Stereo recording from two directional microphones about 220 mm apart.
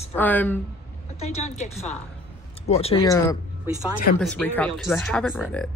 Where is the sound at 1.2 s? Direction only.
30° left (ahead or behind).